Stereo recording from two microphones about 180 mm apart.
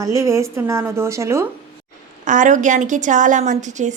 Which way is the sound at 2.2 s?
45° right (ahead or behind).